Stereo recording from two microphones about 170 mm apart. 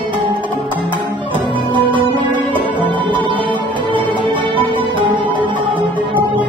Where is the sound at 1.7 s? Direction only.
30° right (ahead or behind).